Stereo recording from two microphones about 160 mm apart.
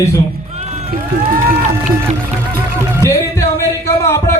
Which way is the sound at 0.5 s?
45° right (ahead or behind).